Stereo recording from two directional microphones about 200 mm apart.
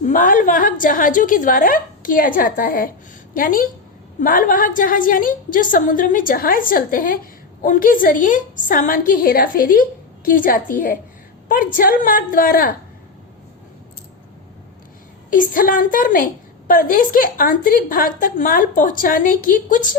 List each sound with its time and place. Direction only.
0.0 s a woman's voice: 40° left (ahead or behind)
15.3 s a woman's voice: 45° left (ahead or behind)